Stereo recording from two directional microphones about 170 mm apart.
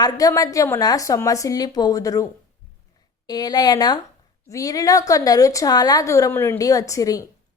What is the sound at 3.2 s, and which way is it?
A woman's voice, 25° left (ahead or behind).